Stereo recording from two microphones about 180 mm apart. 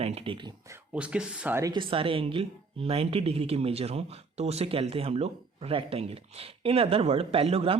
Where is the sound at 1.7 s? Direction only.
30° right (ahead or behind).